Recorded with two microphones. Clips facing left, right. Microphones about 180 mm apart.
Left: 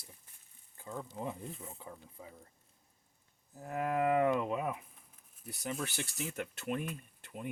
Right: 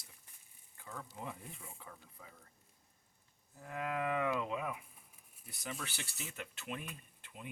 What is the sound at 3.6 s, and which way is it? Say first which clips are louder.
Speech: left 6 dB; 40° left (ahead or behind).